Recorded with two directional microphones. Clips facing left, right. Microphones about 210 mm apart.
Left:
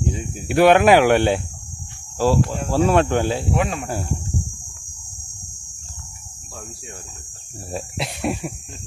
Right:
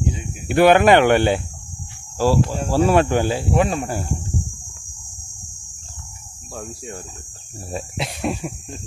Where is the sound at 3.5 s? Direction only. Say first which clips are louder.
Right 3 dB; 35° right (ahead or behind).